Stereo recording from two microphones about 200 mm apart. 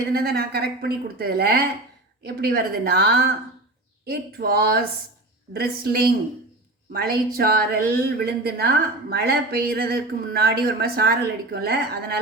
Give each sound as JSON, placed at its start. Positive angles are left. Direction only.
{"t": 0.1, "sound": "a woman's voice", "side_deg": -50}